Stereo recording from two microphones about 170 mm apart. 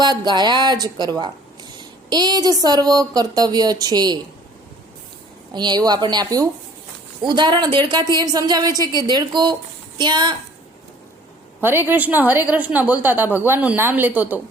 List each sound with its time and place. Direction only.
0.0 s a woman's voice: 25° right (ahead or behind)
5.5 s a woman's voice: 25° right (ahead or behind)
11.6 s a woman's voice: 10° right (ahead or behind)